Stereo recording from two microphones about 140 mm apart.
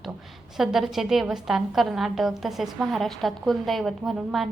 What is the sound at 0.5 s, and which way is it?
A woman's voice, centre (ahead or behind).